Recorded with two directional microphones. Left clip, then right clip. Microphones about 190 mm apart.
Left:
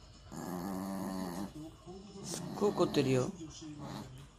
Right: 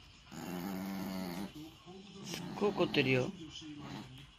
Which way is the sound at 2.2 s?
Centre (ahead or behind).